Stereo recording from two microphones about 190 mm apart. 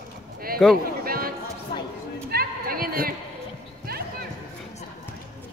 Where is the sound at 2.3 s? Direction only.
50° right (ahead or behind).